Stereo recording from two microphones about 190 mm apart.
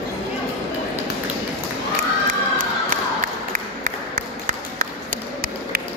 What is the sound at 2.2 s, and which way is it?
Crowd, 45° right (ahead or behind).